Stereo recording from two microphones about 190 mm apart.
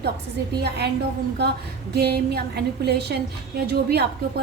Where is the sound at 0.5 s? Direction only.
60° right (ahead or behind).